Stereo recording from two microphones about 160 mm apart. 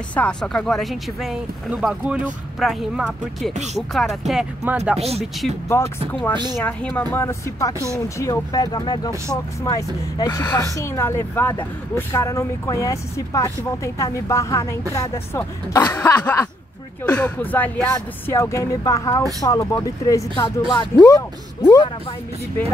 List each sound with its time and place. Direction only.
0.1 s speech: 5° left (ahead or behind)
5.7 s speech: 15° left (ahead or behind)